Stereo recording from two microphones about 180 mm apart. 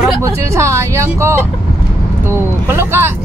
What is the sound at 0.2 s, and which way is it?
Speech, 15° right (ahead or behind).